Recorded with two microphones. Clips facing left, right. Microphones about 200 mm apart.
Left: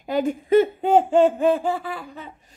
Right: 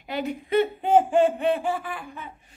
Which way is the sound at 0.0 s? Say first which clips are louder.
Left 6 dB; 45° left (ahead or behind).